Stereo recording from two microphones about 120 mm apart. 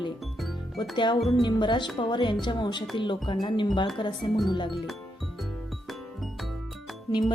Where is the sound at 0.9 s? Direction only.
40° left (ahead or behind).